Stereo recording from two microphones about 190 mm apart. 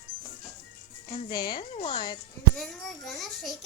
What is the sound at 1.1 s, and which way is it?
Speech, 20° left (ahead or behind).